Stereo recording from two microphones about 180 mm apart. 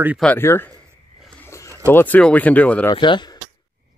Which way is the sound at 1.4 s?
15° left (ahead or behind).